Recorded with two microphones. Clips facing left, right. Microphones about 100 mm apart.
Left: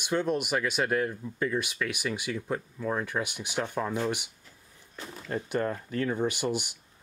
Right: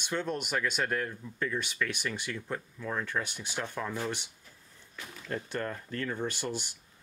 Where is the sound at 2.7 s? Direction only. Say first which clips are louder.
Left 2 dB; 20° left (ahead or behind).